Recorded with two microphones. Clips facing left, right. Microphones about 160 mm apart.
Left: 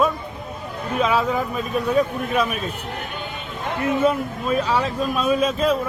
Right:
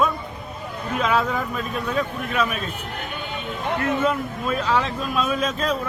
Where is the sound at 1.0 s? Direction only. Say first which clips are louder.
Left 2 dB; 5° left (ahead or behind).